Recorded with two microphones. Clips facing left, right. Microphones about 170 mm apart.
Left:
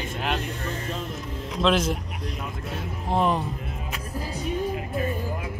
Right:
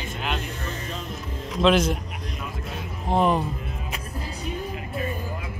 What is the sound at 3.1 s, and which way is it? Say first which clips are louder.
Speech: right 2 dB; 5° right (ahead or behind).